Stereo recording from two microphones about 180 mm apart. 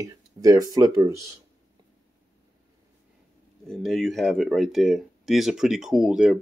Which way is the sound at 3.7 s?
Centre (ahead or behind).